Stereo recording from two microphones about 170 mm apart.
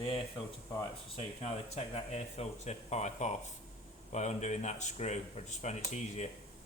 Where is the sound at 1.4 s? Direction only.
40° left (ahead or behind).